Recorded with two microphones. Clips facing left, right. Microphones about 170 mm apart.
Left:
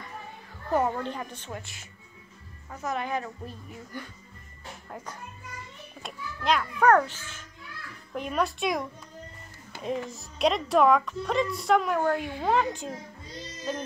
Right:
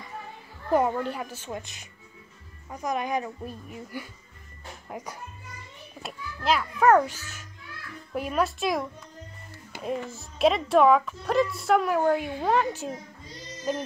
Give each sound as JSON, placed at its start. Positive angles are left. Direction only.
{"t": 0.7, "sound": "a woman's voice", "side_deg": -10}
{"t": 1.5, "sound": "a woman's voice", "side_deg": -20}